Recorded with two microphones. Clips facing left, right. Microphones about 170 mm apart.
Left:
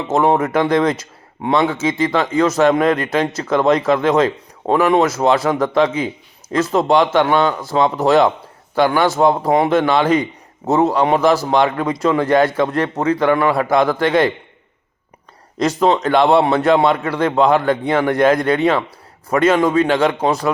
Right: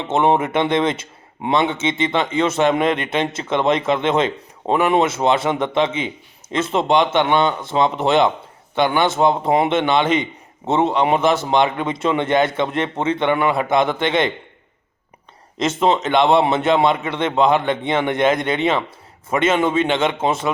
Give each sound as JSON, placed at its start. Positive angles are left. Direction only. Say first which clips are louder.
{"t": 0.0, "sound": "a man's voice", "louder": "left 2 dB", "side_deg": -25}
{"t": 15.5, "sound": "speech", "louder": "left 2 dB", "side_deg": -25}